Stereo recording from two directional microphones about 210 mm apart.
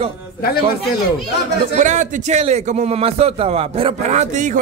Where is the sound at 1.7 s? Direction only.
35° right (ahead or behind).